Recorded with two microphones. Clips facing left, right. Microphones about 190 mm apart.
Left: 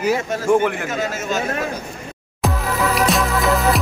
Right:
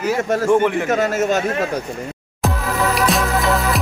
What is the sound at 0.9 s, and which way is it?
Speech, 65° right (ahead or behind).